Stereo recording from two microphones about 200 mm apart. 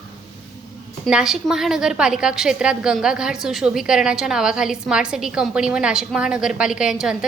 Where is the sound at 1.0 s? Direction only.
Centre (ahead or behind).